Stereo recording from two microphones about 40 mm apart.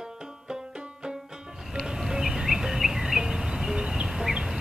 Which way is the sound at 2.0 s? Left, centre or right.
Centre.